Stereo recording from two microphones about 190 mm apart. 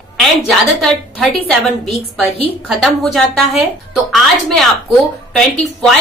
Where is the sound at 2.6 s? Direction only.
Centre (ahead or behind).